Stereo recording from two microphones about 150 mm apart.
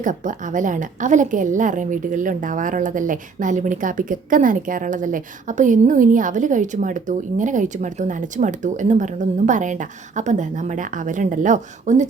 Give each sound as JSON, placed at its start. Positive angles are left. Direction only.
{"t": 0.0, "sound": "a woman's voice", "side_deg": -60}